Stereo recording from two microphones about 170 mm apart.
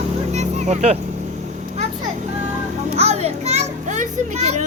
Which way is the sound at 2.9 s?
40° right (ahead or behind).